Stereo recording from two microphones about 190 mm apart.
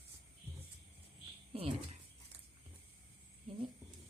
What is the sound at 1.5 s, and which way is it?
Speech, 30° right (ahead or behind).